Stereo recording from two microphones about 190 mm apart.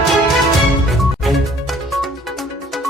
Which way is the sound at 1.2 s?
Centre (ahead or behind).